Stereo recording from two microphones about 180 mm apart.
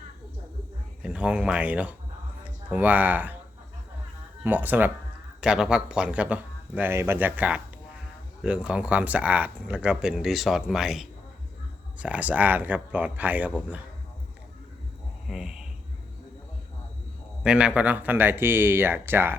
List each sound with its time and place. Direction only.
1.0 s speech: 5° right (ahead or behind)
4.4 s speech: 10° right (ahead or behind)
15.3 s speech: 5° right (ahead or behind)
17.4 s speech: 5° right (ahead or behind)